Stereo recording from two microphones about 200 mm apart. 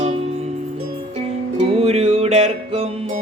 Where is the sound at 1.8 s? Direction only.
30° right (ahead or behind).